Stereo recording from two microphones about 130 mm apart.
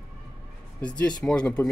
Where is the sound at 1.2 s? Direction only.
5° left (ahead or behind).